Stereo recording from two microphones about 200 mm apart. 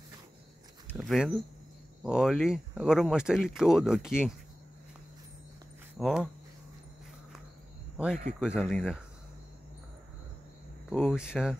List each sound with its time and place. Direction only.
0.8 s speech: centre (ahead or behind)
5.9 s speech: centre (ahead or behind)
8.4 s speech: 5° right (ahead or behind)
10.9 s speech: centre (ahead or behind)